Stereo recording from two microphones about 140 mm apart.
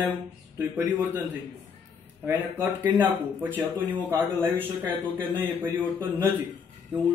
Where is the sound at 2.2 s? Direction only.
15° right (ahead or behind).